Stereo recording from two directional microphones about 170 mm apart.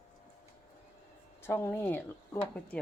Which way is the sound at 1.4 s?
15° left (ahead or behind).